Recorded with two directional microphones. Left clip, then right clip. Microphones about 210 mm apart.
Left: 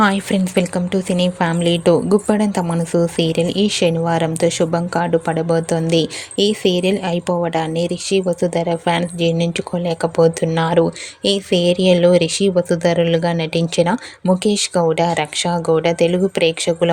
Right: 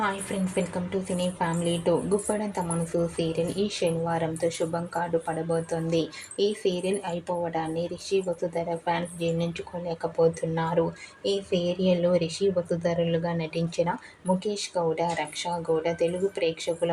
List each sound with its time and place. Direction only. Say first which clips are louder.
0.0 s a woman's voice: left 12 dB; 50° left (ahead or behind)